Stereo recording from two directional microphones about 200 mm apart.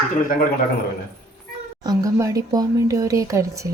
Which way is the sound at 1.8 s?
20° right (ahead or behind).